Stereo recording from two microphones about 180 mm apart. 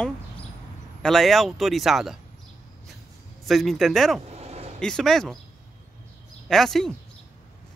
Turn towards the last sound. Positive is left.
turn(degrees=0)  # may be behind; listen again after turning